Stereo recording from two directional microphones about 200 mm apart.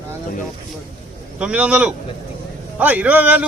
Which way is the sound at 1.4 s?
5° right (ahead or behind).